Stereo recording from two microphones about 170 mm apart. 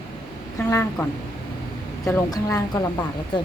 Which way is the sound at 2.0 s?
20° left (ahead or behind).